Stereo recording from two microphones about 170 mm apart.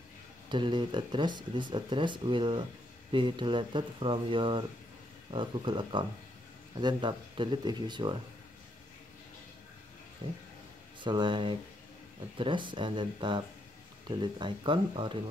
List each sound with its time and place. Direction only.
0.5 s speech: 30° right (ahead or behind)
11.0 s speech: 30° right (ahead or behind)